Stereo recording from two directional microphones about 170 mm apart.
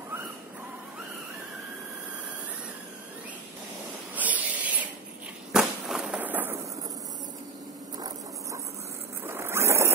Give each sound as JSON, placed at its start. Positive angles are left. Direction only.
{"t": 4.1, "sound": "rub", "side_deg": -10}
{"t": 5.5, "sound": "a sound", "side_deg": -5}
{"t": 9.2, "sound": "vehicle", "side_deg": -15}